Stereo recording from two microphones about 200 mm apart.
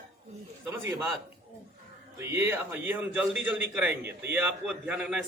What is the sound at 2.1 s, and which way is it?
A man's voice, 15° right (ahead or behind).